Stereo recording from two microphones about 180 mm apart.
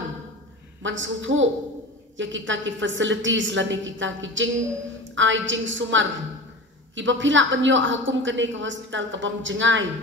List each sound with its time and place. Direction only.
0.8 s a woman's voice: 90° right